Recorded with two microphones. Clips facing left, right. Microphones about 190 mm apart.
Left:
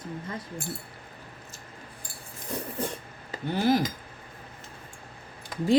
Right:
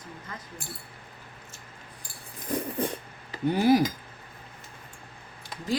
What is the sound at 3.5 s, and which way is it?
Speech, 10° right (ahead or behind).